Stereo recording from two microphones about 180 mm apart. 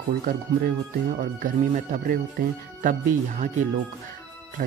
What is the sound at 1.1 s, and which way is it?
Speech, 45° right (ahead or behind).